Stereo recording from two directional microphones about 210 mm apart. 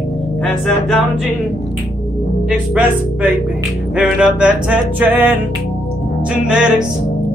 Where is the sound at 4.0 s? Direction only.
5° right (ahead or behind).